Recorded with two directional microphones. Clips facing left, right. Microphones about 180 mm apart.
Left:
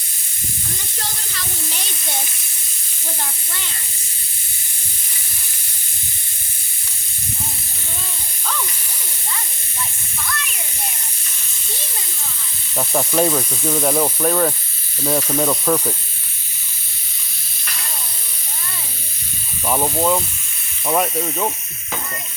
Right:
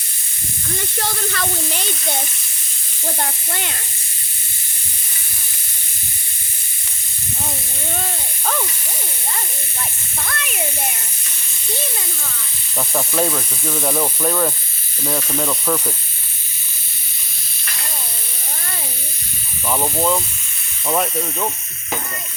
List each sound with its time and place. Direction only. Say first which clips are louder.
0.9 s speech: right 11 dB; 65° right (ahead or behind)
3.2 s speech: right 5 dB; 60° right (ahead or behind)
10.2 s speech: right 1 dB; 60° right (ahead or behind)
12.7 s speech: left 2 dB; 15° left (ahead or behind)
19.6 s speech: left 1 dB; 10° left (ahead or behind)